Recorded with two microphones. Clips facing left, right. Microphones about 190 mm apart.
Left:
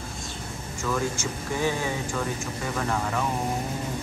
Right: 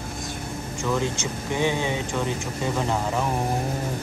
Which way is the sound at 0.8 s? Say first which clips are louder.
Right 2 dB; 20° right (ahead or behind).